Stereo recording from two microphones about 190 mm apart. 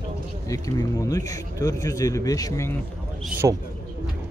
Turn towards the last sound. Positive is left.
turn(degrees=-10)  # may be behind; listen again after turning